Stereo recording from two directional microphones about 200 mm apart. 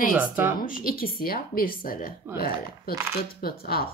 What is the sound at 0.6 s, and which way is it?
Speech, 45° left (ahead or behind).